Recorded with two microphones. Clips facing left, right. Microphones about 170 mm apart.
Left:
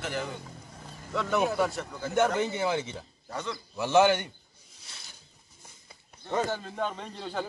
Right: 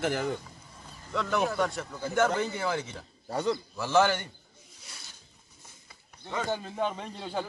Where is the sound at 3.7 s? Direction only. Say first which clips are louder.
Left 4 dB; 20° left (ahead or behind).